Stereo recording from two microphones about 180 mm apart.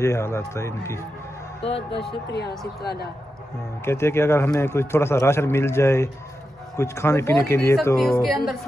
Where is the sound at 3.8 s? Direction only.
15° left (ahead or behind).